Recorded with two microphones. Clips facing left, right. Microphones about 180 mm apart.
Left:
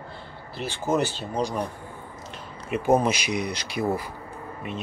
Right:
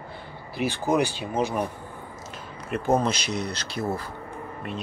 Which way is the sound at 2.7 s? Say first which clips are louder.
Left 2 dB; 10° left (ahead or behind).